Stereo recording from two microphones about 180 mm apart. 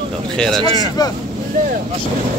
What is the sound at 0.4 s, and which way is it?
Speech, 5° left (ahead or behind).